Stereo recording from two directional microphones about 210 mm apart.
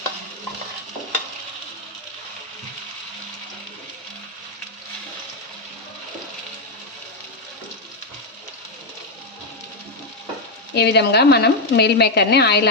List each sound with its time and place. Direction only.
10.8 s speech: 50° left (ahead or behind)